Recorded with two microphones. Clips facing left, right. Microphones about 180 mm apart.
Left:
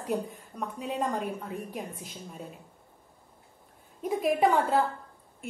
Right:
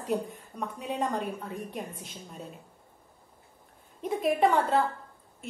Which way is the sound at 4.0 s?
Centre (ahead or behind).